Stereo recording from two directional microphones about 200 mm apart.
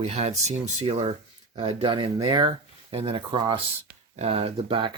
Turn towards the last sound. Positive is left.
turn(degrees=-25)  # may be behind; listen again after turning